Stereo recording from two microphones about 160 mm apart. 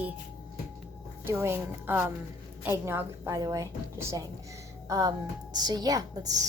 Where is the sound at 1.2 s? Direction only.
15° right (ahead or behind).